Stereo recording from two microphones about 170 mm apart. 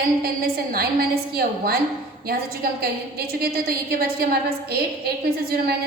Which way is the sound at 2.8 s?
65° right (ahead or behind).